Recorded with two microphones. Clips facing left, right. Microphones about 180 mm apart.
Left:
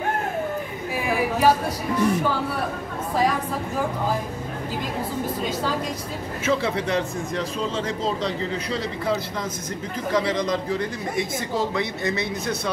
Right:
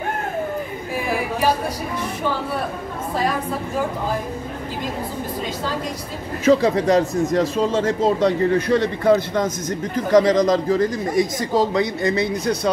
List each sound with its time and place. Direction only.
6.4 s speech: 40° right (ahead or behind)
9.4 s a man's voice: 40° right (ahead or behind)